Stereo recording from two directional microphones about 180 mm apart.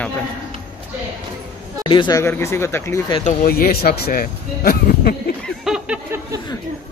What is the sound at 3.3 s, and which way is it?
Speech, 55° left (ahead or behind).